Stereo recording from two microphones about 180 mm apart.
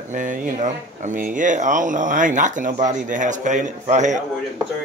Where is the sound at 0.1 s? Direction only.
45° right (ahead or behind).